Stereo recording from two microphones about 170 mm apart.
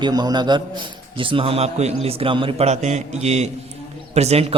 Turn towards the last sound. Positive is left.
turn(degrees=-35)  # may be behind; listen again after turning